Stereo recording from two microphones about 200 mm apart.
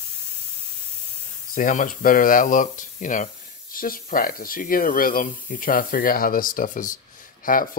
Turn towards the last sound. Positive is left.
turn(degrees=45)  # may be behind; listen again after turning